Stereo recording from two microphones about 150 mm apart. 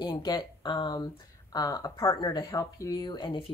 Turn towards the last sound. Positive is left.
turn(degrees=30)  # may be behind; listen again after turning